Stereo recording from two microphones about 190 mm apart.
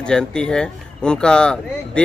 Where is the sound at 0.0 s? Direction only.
5° left (ahead or behind).